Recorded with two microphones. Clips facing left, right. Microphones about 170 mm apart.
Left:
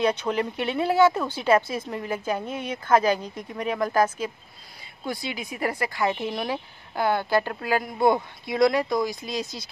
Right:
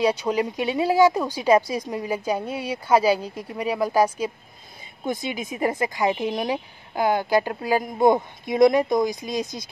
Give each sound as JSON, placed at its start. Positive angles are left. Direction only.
{"t": 0.0, "sound": "speech", "side_deg": -10}